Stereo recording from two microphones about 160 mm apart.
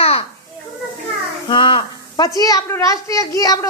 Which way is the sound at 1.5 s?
30° left (ahead or behind).